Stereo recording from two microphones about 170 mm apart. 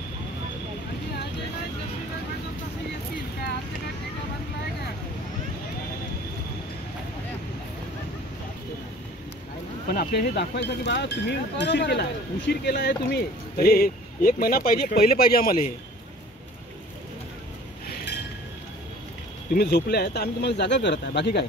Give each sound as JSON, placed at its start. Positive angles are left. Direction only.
{"t": 9.8, "sound": "speech", "side_deg": 70}
{"t": 19.5, "sound": "speech", "side_deg": 70}